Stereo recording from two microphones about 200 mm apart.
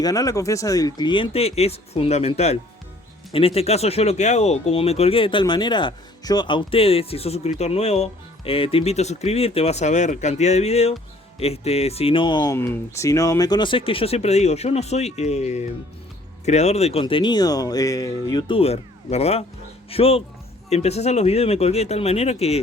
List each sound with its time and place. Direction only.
0.0 s speech: 15° left (ahead or behind)